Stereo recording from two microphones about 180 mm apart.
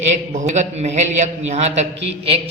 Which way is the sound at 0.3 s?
40° right (ahead or behind).